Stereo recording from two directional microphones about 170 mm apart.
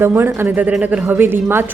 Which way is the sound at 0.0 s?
15° right (ahead or behind).